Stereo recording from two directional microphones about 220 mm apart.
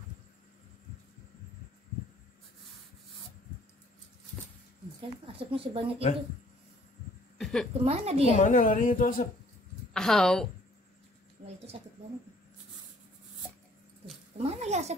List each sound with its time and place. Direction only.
5.2 s speech: 25° right (ahead or behind)
7.3 s a sound: centre (ahead or behind)
7.8 s speech: 30° right (ahead or behind)
8.3 s a woman's voice: 35° left (ahead or behind)
9.9 s a woman's voice: centre (ahead or behind)
11.4 s a sound: 30° right (ahead or behind)
14.4 s speech: 30° right (ahead or behind)